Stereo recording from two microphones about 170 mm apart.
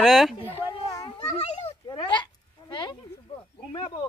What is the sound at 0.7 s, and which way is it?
Children playing, 30° left (ahead or behind).